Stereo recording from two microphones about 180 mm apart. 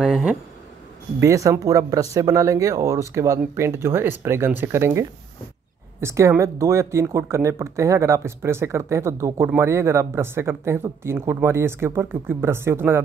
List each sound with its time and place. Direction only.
0.0 s speech: 5° right (ahead or behind)
1.2 s speech: 15° right (ahead or behind)